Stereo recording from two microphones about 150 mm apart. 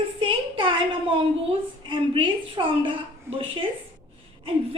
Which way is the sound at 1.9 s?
35° right (ahead or behind).